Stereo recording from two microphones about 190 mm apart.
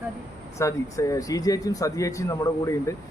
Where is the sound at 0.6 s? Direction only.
15° left (ahead or behind).